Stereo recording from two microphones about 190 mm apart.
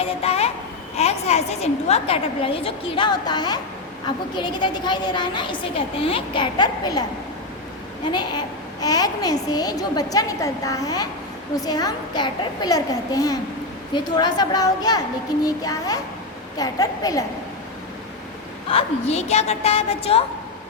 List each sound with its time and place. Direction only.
0.0 s a child's voice: 30° left (ahead or behind)
8.0 s a child's voice: 25° left (ahead or behind)
18.7 s a woman's voice: 30° left (ahead or behind)